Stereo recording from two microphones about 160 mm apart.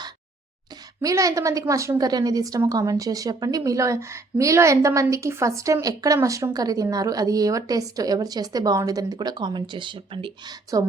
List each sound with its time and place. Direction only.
1.0 s a woman's voice: 20° right (ahead or behind)